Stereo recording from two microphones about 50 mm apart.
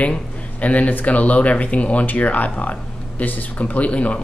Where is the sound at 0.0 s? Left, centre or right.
Left.